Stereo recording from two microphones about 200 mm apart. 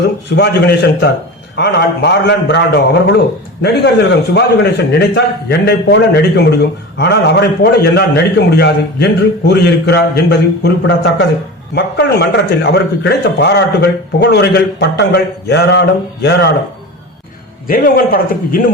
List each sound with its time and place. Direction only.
0.3 s a man's voice: 55° left (ahead or behind)
17.7 s a man's voice: 45° left (ahead or behind)